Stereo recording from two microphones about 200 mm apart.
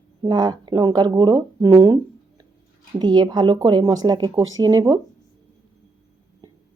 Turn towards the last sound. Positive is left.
turn(degrees=-20)  # may be behind; listen again after turning